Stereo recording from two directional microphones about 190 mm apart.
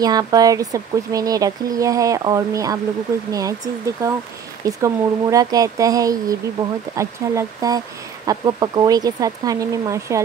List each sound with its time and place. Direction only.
0.0 s speech: 20° right (ahead or behind)